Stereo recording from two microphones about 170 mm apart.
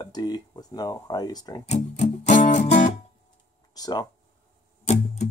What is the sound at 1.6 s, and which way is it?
Music, 40° left (ahead or behind).